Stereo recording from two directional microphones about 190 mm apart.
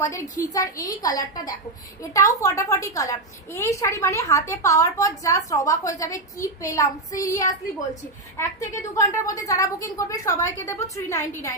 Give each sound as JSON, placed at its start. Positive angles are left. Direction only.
{"t": 0.0, "sound": "a woman's voice", "side_deg": 15}